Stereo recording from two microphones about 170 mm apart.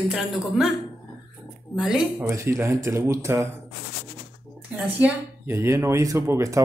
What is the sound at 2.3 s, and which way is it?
Speech, 15° right (ahead or behind).